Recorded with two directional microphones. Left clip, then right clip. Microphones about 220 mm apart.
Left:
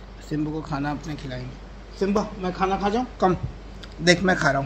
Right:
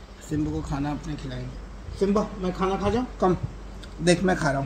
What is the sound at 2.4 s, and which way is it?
A man's voice, 5° right (ahead or behind).